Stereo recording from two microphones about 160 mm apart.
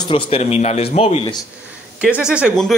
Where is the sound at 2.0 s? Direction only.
5° right (ahead or behind).